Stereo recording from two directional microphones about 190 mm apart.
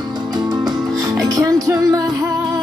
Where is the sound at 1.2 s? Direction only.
20° right (ahead or behind).